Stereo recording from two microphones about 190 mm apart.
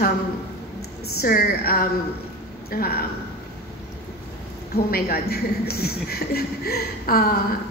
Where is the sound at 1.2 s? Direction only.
50° left (ahead or behind).